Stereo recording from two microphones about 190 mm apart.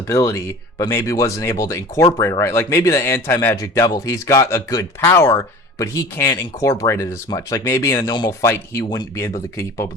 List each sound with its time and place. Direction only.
0.1 s speech: 15° left (ahead or behind)